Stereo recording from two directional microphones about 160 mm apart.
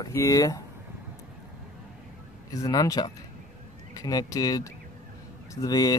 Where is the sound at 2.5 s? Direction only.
20° left (ahead or behind).